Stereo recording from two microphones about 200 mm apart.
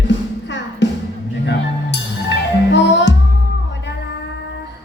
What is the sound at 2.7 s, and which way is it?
Music, 60° left (ahead or behind).